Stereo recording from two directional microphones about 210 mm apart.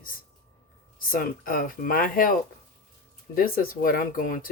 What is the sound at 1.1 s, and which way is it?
Speech, 40° left (ahead or behind).